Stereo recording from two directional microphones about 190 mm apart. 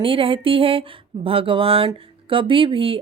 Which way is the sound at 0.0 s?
30° right (ahead or behind).